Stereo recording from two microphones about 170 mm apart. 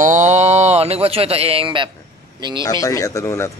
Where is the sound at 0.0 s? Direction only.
45° right (ahead or behind); by 1.9 s 30° right (ahead or behind).